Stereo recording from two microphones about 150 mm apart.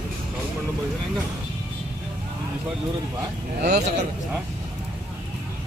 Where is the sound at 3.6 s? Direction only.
90° right.